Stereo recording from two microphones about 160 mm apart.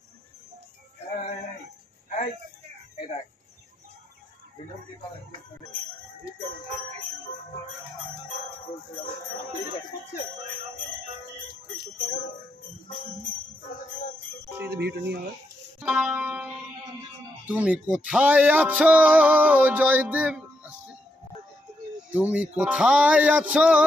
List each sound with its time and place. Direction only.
14.7 s speech: 90° right
15.8 s music: 5° right (ahead or behind)
22.1 s music: 10° right (ahead or behind)